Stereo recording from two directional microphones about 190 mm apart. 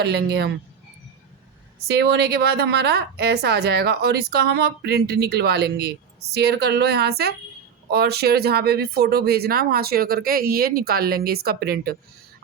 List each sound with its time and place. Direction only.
0.0 s a woman's voice: 60° right (ahead or behind)
1.9 s a woman's voice: 60° right (ahead or behind)